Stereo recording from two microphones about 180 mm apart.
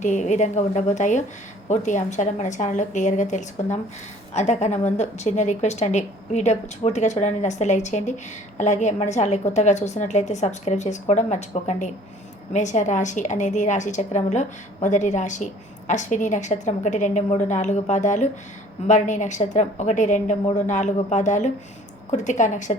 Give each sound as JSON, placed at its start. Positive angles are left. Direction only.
{"t": 0.0, "sound": "a woman's voice", "side_deg": 40}